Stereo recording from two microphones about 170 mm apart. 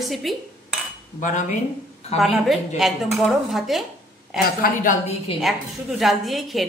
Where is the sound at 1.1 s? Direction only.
50° left (ahead or behind).